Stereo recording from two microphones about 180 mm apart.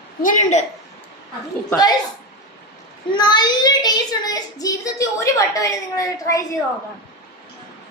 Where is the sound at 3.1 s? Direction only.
25° left (ahead or behind).